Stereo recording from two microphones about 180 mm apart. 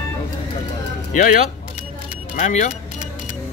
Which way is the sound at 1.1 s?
45° left (ahead or behind).